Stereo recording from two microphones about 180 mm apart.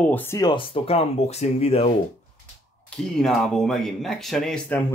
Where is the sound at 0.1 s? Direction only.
15° left (ahead or behind); by 2.0 s 35° left (ahead or behind).